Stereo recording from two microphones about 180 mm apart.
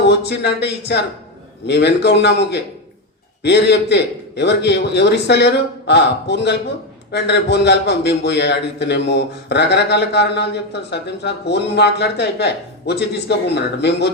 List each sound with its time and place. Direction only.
0.1 s a man's voice: 65° left (ahead or behind)